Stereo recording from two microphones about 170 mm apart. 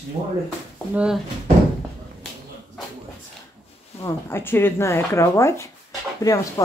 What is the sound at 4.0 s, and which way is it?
Speech, 15° left (ahead or behind).